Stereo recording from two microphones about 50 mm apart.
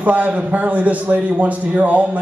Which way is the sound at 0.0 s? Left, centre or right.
Right.